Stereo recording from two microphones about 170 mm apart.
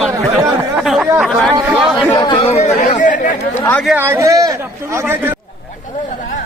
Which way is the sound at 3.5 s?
10° left (ahead or behind).